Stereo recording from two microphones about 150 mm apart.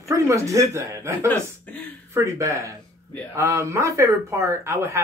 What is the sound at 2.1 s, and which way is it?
Speech, 20° right (ahead or behind).